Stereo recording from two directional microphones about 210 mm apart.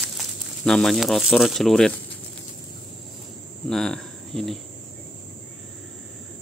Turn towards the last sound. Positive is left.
turn(degrees=0)  # may be behind; listen again after turning